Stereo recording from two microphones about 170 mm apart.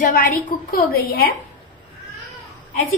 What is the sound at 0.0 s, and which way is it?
A woman's voice, 55° left (ahead or behind).